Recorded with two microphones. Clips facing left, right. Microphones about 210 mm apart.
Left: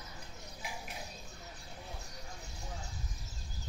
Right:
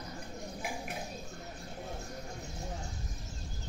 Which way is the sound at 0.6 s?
50° right (ahead or behind).